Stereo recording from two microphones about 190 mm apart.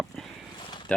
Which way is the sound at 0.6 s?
25° left (ahead or behind).